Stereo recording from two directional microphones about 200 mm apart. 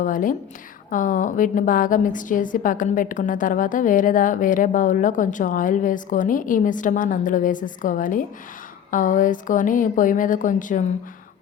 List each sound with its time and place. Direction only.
0.0 s a woman's voice: 40° left (ahead or behind)